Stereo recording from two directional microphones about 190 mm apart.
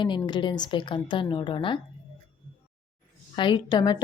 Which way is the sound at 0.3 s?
25° left (ahead or behind).